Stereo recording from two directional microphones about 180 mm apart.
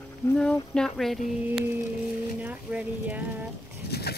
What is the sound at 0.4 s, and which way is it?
Speech, 5° left (ahead or behind).